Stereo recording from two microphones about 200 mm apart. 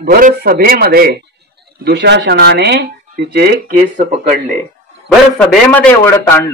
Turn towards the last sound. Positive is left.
turn(degrees=10)  # may be behind; listen again after turning